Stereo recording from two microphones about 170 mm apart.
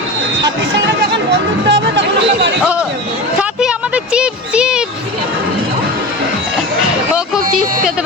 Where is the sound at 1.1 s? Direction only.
90° right.